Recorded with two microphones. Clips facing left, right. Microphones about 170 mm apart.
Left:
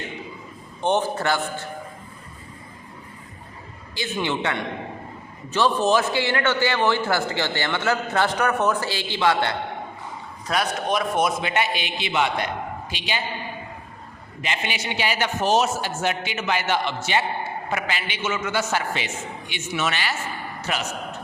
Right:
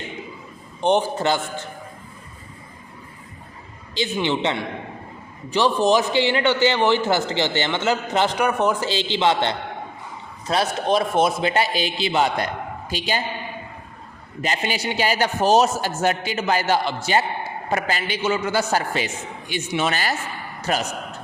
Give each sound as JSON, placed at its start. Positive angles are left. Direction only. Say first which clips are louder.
{"t": 0.8, "sound": "a man's voice", "louder": "right 3 dB", "side_deg": -15}
{"t": 3.9, "sound": "a man's voice", "louder": "right 3 dB", "side_deg": -20}
{"t": 14.4, "sound": "a man's voice", "louder": "right 4 dB", "side_deg": -40}
{"t": 20.6, "sound": "a sound", "louder": "right 5 dB", "side_deg": -40}